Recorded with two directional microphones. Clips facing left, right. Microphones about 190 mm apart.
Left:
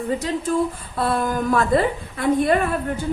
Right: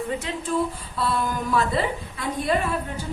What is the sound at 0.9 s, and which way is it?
A woman's voice, 50° left (ahead or behind).